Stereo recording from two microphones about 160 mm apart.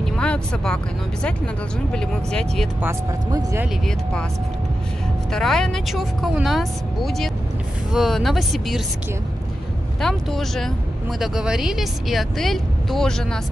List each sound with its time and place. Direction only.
0.0 s vehicle: 5° left (ahead or behind)
1.9 s speech: 5° left (ahead or behind)
3.3 s speech: 25° right (ahead or behind)
3.8 s speech: 5° left (ahead or behind)
5.3 s speech: 5° left (ahead or behind)
9.9 s speech: centre (ahead or behind)